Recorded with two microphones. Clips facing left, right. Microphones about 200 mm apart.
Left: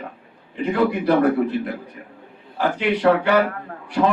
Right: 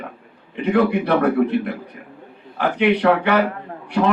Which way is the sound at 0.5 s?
65° right (ahead or behind).